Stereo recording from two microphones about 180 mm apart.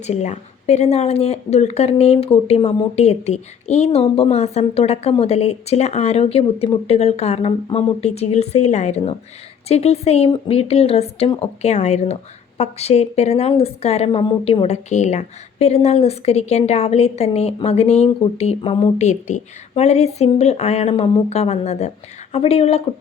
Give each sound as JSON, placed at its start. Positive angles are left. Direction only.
{"t": 0.1, "sound": "a woman's voice", "side_deg": 40}
{"t": 18.9, "sound": "a woman's voice", "side_deg": 40}